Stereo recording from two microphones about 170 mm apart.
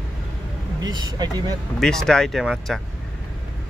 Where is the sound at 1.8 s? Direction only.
5° left (ahead or behind).